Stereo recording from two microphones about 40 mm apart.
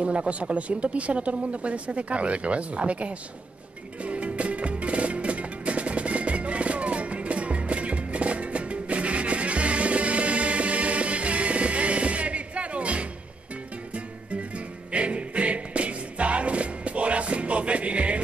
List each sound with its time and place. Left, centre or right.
0.0 s speech: right
4.0 s music: right